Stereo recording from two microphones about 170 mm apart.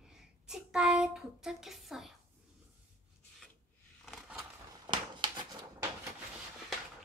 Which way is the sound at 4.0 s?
5° right (ahead or behind).